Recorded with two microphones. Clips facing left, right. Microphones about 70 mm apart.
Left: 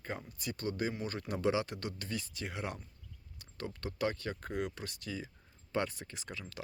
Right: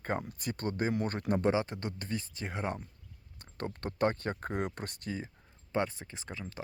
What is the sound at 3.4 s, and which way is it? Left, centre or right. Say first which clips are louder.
Speech: right 4 dB; right.